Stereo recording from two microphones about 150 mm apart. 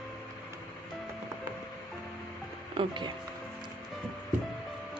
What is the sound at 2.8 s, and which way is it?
Speech, 30° right (ahead or behind).